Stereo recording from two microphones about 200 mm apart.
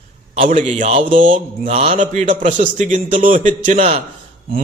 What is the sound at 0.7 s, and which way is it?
A man's voice, 35° right (ahead or behind).